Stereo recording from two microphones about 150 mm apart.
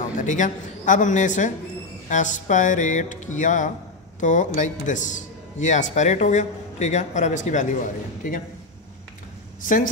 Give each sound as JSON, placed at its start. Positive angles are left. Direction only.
{"t": 0.2, "sound": "a man's voice", "side_deg": 55}